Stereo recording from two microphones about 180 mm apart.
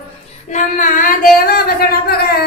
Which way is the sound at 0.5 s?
45° left (ahead or behind).